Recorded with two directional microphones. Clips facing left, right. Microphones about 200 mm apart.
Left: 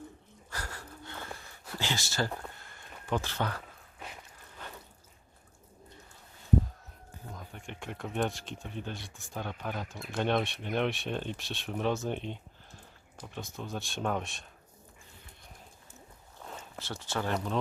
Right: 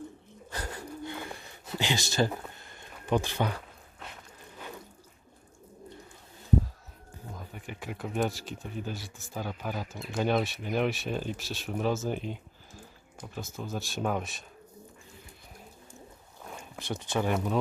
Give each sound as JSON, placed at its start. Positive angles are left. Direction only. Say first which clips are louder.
{"t": 0.5, "sound": "gasp", "louder": "right 5 dB", "side_deg": -20}
{"t": 3.1, "sound": "speech", "louder": "right 4 dB", "side_deg": -15}
{"t": 7.3, "sound": "speech", "louder": "right 3 dB", "side_deg": -5}
{"t": 16.5, "sound": "a sound", "louder": "right 5 dB", "side_deg": -15}
{"t": 17.3, "sound": "speech", "louder": "right 3 dB", "side_deg": -10}